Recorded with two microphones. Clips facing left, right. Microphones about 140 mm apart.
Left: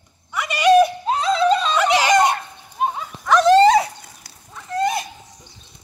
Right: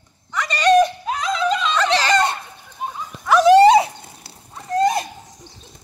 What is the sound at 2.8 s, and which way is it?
Dog, 70° left (ahead or behind).